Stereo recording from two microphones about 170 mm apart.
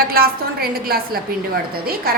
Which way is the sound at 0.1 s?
60° right (ahead or behind).